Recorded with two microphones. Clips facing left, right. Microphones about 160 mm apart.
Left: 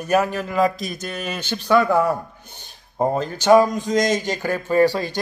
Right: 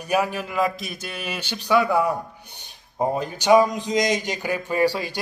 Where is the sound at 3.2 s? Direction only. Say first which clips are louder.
Left 2 dB; 15° right (ahead or behind).